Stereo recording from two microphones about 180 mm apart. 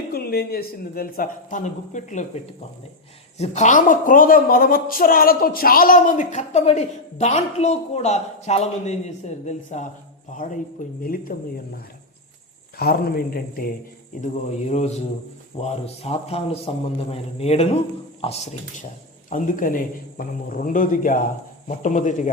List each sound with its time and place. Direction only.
0.1 s a man's voice: 60° left (ahead or behind)
14.2 s a man's voice: 40° left (ahead or behind)